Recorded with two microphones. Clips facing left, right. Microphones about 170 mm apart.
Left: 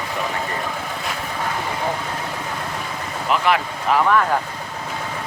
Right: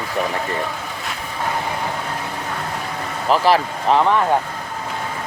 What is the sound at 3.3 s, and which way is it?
Speech, 35° right (ahead or behind).